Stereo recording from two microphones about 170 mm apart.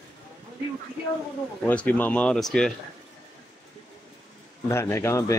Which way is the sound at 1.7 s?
10° left (ahead or behind).